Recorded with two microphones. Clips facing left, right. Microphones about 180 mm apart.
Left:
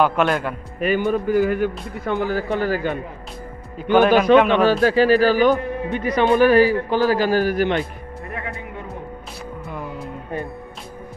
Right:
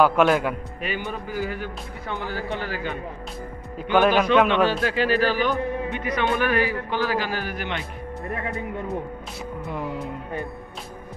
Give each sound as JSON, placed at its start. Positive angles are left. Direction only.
{"t": 0.0, "sound": "a man's voice", "side_deg": -5}
{"t": 0.7, "sound": "a man's voice", "side_deg": 50}
{"t": 3.9, "sound": "a man's voice", "side_deg": 0}
{"t": 4.6, "sound": "speech", "side_deg": 40}